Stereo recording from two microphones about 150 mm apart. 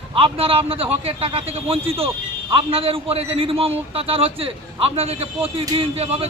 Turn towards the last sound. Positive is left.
turn(degrees=-40)  # may be behind; listen again after turning